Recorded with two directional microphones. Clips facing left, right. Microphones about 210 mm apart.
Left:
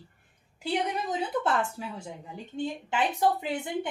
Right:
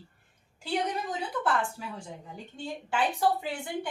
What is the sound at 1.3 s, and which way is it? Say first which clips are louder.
Speech: left 2 dB; 25° left (ahead or behind).